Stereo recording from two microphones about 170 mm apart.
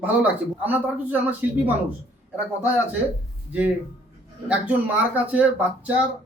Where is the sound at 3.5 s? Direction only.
10° right (ahead or behind).